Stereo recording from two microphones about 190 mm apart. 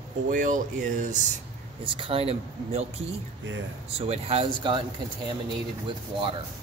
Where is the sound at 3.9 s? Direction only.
30° right (ahead or behind).